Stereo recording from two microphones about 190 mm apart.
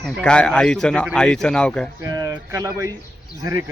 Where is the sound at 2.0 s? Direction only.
15° right (ahead or behind).